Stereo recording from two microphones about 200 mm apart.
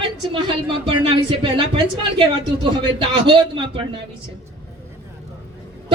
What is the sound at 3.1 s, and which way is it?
Speech, 25° right (ahead or behind).